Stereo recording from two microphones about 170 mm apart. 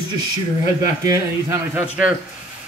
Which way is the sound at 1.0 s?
15° right (ahead or behind).